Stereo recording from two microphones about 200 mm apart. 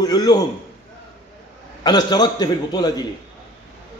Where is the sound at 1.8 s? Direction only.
20° left (ahead or behind).